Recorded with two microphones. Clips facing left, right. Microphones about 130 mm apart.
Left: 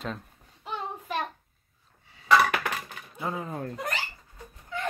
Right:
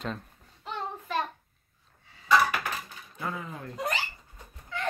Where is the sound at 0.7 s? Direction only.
5° left (ahead or behind).